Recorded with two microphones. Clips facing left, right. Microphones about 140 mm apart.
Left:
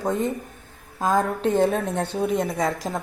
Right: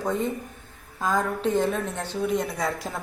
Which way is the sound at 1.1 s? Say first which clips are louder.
Left 3 dB; 50° left (ahead or behind).